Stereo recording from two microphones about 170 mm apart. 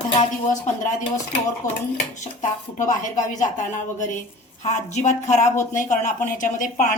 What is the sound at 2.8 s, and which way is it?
A woman's voice, 45° left (ahead or behind).